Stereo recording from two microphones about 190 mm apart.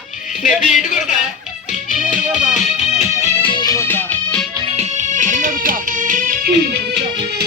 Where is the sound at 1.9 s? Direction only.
45° left (ahead or behind); by 4.4 s 10° left (ahead or behind).